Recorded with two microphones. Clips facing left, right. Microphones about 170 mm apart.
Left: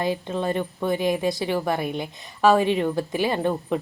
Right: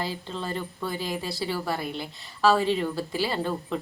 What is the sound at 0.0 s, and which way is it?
A woman's voice, 20° left (ahead or behind).